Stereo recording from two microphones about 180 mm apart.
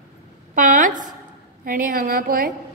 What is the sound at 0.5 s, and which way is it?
A woman's voice, 45° right (ahead or behind).